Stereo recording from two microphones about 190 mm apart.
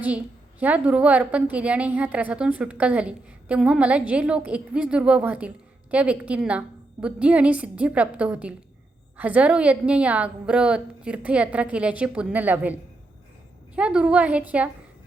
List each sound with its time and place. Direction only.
0.6 s a woman's voice: 5° right (ahead or behind)
13.7 s a woman's voice: 5° right (ahead or behind)